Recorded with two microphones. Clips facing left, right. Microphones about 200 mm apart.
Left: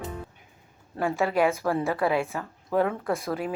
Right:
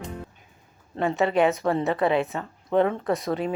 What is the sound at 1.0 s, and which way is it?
Speech, 20° right (ahead or behind).